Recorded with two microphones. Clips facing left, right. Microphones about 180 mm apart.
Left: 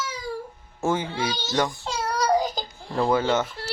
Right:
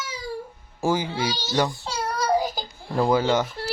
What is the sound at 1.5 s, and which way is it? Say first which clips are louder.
Speech: right 1 dB; 20° right (ahead or behind).